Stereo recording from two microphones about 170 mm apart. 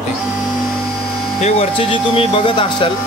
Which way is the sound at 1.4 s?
35° left (ahead or behind).